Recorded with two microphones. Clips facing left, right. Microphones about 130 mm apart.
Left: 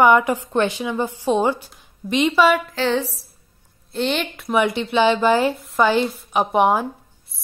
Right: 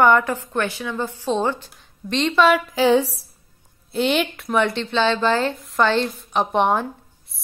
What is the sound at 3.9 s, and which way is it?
A woman's voice, 5° right (ahead or behind).